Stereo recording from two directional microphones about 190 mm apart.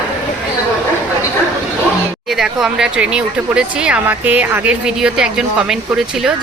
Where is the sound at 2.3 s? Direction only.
Centre (ahead or behind).